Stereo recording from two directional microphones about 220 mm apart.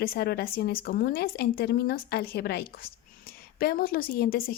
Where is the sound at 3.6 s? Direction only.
45° left (ahead or behind).